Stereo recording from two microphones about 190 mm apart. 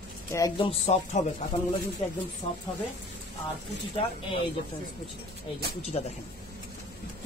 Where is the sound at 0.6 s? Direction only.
35° left (ahead or behind).